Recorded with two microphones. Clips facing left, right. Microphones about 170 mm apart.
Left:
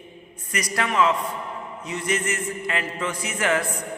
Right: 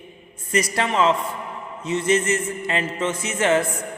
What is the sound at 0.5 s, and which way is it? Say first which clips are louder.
A man's voice: right 2 dB; 25° right (ahead or behind).